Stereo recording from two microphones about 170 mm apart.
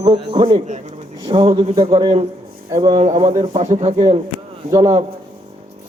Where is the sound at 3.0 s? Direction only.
40° right (ahead or behind).